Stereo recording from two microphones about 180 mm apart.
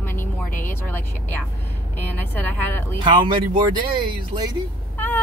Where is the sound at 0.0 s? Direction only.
10° left (ahead or behind).